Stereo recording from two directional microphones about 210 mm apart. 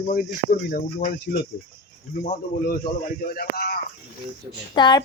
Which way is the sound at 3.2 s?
45° left (ahead or behind).